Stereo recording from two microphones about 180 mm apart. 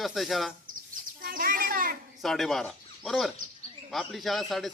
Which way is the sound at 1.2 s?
55° right (ahead or behind).